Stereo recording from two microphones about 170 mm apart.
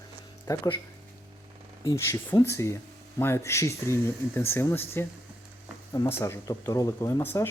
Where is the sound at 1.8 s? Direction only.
20° left (ahead or behind).